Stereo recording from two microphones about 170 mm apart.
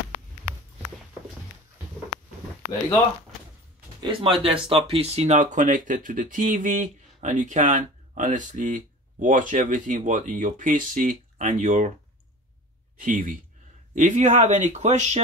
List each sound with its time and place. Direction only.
4.0 s speech: 30° right (ahead or behind); by 11.9 s 45° right (ahead or behind)
13.0 s speech: 50° right (ahead or behind)